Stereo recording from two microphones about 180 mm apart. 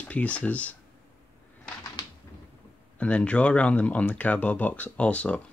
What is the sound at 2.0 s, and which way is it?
Typewriter, 25° left (ahead or behind).